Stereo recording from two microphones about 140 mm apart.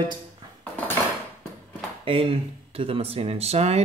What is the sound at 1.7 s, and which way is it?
Speech, 40° right (ahead or behind).